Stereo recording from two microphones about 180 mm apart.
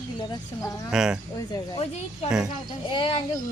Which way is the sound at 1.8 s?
35° left (ahead or behind).